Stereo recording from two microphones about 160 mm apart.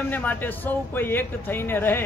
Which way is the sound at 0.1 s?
10° left (ahead or behind).